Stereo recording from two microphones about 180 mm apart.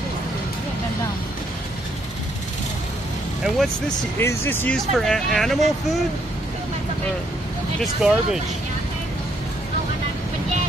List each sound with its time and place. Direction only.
3.4 s speech: 5° right (ahead or behind)
4.2 s speech: 10° left (ahead or behind)
7.8 s speech: 5° right (ahead or behind)